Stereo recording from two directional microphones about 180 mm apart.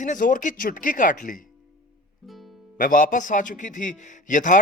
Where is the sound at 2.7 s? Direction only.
50° left (ahead or behind).